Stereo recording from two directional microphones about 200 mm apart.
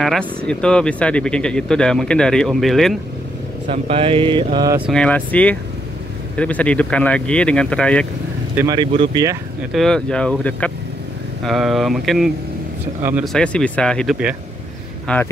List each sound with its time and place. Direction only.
0.0 s speech: 5° left (ahead or behind)
3.6 s speech: 35° right (ahead or behind)
4.7 s speech: centre (ahead or behind)
8.5 s speech: 20° right (ahead or behind)
9.7 s speech: centre (ahead or behind)
13.3 s speech: 5° left (ahead or behind)